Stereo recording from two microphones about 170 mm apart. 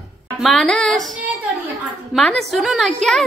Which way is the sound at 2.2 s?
5° left (ahead or behind).